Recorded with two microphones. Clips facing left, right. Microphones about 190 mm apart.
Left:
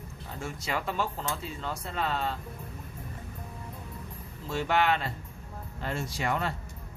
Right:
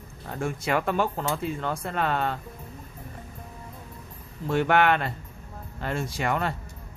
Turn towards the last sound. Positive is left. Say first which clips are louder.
# right 3 dB
turn(degrees=-60)  # may be behind; listen again after turning